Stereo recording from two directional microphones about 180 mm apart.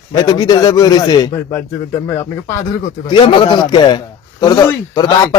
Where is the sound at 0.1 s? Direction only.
20° left (ahead or behind).